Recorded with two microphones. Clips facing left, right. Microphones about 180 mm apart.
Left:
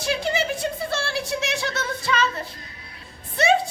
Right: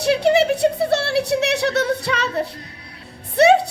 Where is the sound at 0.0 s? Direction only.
65° right (ahead or behind).